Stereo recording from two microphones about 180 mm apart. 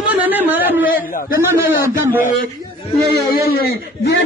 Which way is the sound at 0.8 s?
50° left (ahead or behind).